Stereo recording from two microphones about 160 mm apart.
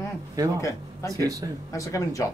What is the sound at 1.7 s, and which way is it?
Speech, 20° left (ahead or behind).